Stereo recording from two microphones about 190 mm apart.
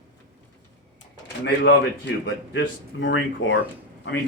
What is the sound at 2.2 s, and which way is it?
A man's voice, 65° left (ahead or behind).